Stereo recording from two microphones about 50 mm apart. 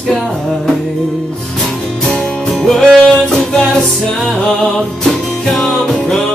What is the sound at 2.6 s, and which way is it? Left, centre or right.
Music, centre.